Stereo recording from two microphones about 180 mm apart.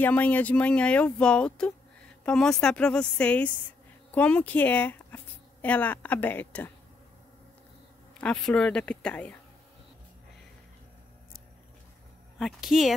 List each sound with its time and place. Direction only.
0.0 s a woman's voice: 10° left (ahead or behind)
8.2 s a woman's voice: 5° left (ahead or behind)
12.4 s a woman's voice: centre (ahead or behind)